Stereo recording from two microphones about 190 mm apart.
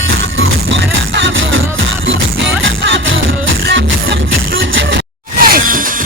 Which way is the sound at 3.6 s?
65° right (ahead or behind).